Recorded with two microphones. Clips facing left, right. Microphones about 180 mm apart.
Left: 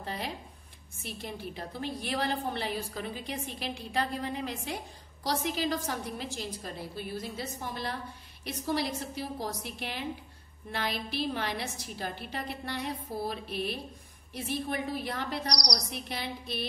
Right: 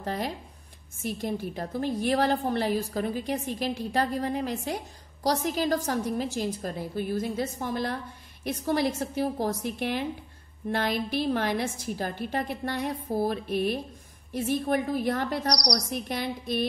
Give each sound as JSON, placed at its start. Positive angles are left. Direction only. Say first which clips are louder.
{"t": 0.0, "sound": "a woman's voice", "louder": "right 6 dB", "side_deg": -45}